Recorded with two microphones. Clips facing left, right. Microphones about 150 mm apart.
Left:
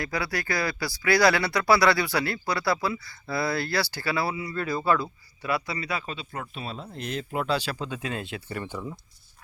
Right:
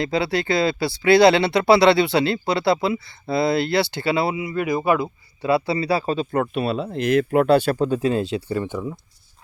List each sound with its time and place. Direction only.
0.0 s speech: 25° right (ahead or behind)
6.3 s speech: 65° right (ahead or behind); by 8.4 s 30° right (ahead or behind)
8.4 s speech: 20° right (ahead or behind)